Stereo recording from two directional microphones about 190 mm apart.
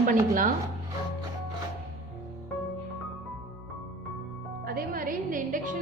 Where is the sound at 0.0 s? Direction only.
45° right (ahead or behind).